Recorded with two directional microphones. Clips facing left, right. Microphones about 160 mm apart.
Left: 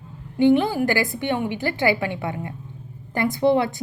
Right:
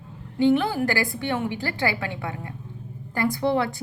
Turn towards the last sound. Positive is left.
turn(degrees=20)  # may be behind; listen again after turning